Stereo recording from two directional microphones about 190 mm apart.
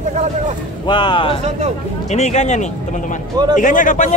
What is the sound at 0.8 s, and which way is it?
Speech, 25° left (ahead or behind).